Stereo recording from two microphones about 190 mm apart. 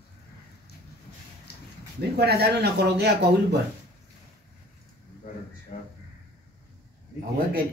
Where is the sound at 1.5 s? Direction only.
60° left (ahead or behind).